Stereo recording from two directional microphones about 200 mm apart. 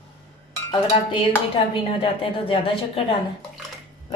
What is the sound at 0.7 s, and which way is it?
A woman's voice, 25° left (ahead or behind).